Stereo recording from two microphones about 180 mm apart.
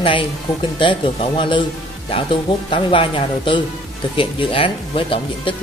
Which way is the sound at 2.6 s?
30° left (ahead or behind).